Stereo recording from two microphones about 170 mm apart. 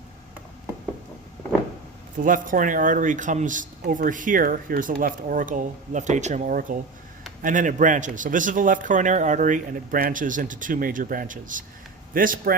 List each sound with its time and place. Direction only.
2.1 s speech: 50° right (ahead or behind)